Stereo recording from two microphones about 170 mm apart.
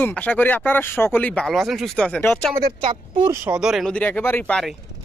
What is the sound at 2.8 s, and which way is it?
Speech, 30° right (ahead or behind).